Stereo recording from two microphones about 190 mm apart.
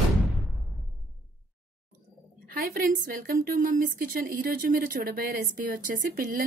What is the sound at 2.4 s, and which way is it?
A woman's voice, 50° right (ahead or behind).